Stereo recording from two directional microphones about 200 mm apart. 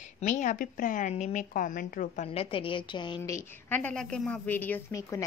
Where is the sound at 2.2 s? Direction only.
25° left (ahead or behind).